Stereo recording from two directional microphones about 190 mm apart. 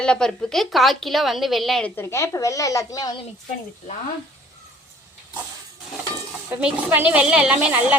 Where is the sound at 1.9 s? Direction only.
15° left (ahead or behind).